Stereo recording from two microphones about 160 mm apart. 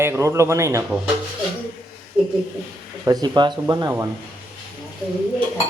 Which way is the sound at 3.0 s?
25° right (ahead or behind).